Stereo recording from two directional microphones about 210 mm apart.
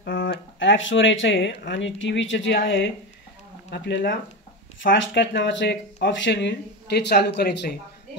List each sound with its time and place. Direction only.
0.0 s speech: 55° left (ahead or behind)